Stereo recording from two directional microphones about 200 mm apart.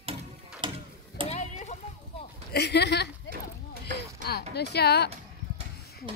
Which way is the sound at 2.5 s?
55° left (ahead or behind).